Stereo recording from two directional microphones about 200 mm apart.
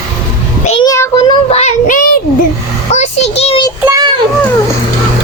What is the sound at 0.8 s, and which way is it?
Child singing, 15° left (ahead or behind).